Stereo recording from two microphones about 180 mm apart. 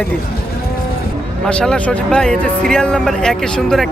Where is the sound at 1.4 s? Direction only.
5° left (ahead or behind).